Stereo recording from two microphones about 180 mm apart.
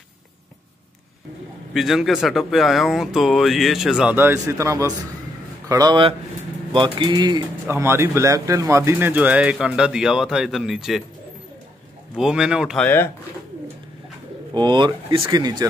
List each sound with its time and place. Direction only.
1.7 s speech: centre (ahead or behind)
12.2 s speech: 5° right (ahead or behind)
12.8 s speech: 10° left (ahead or behind)
14.5 s speech: 25° right (ahead or behind)